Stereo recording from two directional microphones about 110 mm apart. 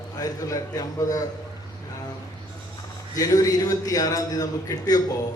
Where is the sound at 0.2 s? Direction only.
35° left (ahead or behind).